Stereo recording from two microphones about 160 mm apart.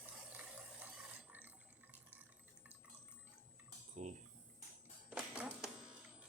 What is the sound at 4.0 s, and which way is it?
Cutlery, 45° right (ahead or behind).